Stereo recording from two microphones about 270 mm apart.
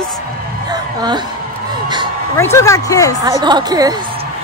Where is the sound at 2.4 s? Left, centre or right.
Centre.